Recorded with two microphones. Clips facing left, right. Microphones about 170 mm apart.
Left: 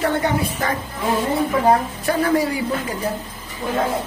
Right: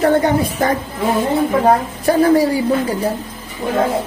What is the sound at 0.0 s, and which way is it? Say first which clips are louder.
Speech: right 6 dB; 40° right (ahead or behind).